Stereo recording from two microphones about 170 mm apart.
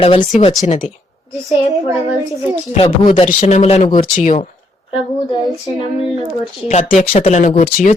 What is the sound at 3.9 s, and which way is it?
Speech, 50° left (ahead or behind).